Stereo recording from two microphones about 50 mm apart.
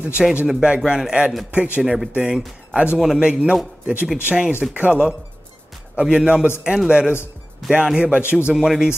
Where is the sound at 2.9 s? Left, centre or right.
Centre.